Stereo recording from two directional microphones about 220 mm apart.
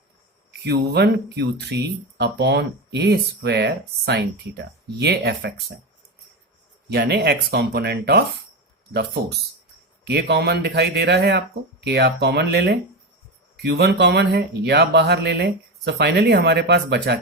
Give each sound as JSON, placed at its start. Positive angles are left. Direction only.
{"t": 0.6, "sound": "speech", "side_deg": -45}
{"t": 6.9, "sound": "speech", "side_deg": -45}
{"t": 10.0, "sound": "speech", "side_deg": -50}